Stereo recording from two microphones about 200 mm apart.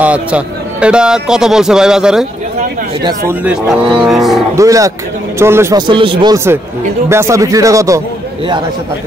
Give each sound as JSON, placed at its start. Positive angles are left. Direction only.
{"t": 0.0, "sound": "a man's voice", "side_deg": -5}
{"t": 3.0, "sound": "speech", "side_deg": -20}
{"t": 3.4, "sound": "a man's voice", "side_deg": 0}
{"t": 4.6, "sound": "speech", "side_deg": -15}